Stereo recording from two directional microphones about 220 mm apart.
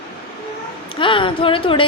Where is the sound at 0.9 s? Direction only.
25° left (ahead or behind).